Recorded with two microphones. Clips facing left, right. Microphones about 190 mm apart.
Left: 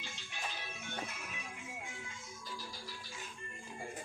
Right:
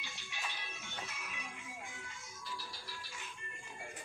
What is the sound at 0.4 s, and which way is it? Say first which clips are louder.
Music: left 3 dB; 50° left (ahead or behind).